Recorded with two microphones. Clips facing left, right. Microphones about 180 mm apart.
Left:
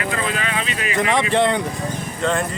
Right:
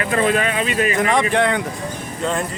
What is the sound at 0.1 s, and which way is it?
Speech, 45° right (ahead or behind).